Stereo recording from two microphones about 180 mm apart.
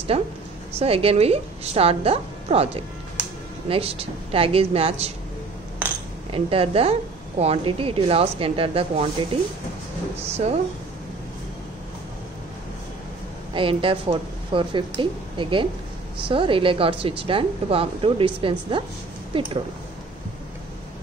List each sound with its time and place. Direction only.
0.1 s a woman's voice: 35° right (ahead or behind)
6.3 s a woman's voice: 30° right (ahead or behind)
13.5 s a woman's voice: 30° right (ahead or behind)